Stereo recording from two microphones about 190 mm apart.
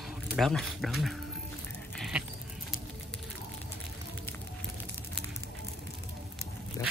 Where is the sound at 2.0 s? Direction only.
5° right (ahead or behind).